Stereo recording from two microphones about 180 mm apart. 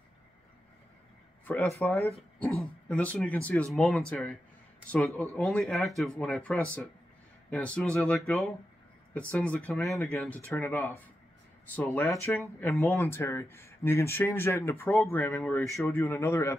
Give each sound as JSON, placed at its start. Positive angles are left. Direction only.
{"t": 1.4, "sound": "speech", "side_deg": 10}
{"t": 9.3, "sound": "speech", "side_deg": 10}